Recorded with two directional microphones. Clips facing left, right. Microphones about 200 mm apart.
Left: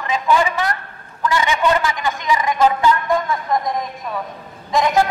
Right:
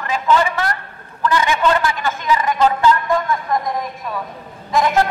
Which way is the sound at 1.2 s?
15° left (ahead or behind).